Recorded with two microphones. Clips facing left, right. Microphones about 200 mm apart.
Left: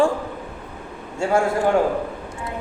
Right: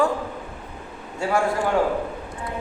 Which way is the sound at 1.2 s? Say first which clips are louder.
Left 3 dB; 25° left (ahead or behind).